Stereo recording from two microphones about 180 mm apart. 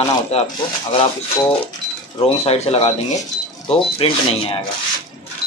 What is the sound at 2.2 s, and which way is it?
Speech, 35° left (ahead or behind).